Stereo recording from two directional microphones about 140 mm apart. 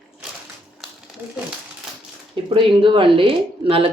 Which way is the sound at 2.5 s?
35° right (ahead or behind).